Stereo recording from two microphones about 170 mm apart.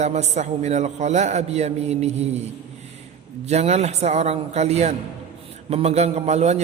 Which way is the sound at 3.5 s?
40° right (ahead or behind).